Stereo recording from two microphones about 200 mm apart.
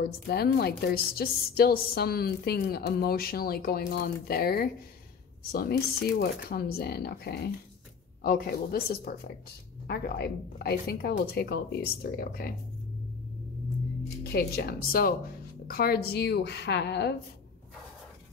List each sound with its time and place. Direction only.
0.0 s a woman's voice: 50° left (ahead or behind)
14.3 s a woman's voice: 50° left (ahead or behind)